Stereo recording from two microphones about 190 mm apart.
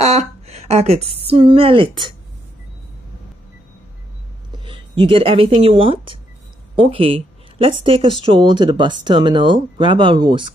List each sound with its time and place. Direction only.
0.0 s a sound: 35° right (ahead or behind)
1.2 s speech: 30° right (ahead or behind)
4.6 s speech: 25° right (ahead or behind)